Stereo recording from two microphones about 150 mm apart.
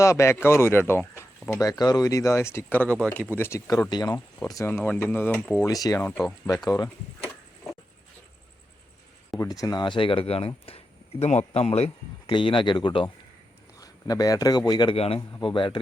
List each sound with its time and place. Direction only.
0.0 s speech: 20° left (ahead or behind)
5.6 s speech: 25° left (ahead or behind)
9.4 s speech: 25° left (ahead or behind); by 11.9 s 45° left (ahead or behind)
12.3 s speech: 35° left (ahead or behind)
14.9 s speech: 40° left (ahead or behind)